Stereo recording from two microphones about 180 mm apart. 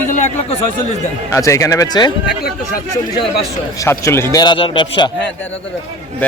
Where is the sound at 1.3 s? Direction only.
15° left (ahead or behind).